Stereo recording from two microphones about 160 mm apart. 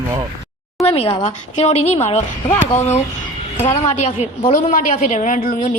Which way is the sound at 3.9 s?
45° left (ahead or behind).